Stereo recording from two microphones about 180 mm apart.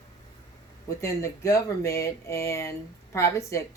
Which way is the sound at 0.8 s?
15° left (ahead or behind).